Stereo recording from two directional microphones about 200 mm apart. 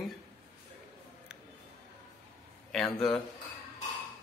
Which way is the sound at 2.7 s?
Centre (ahead or behind).